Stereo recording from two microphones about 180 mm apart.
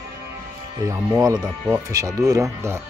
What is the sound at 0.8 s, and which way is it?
Speech, 15° right (ahead or behind).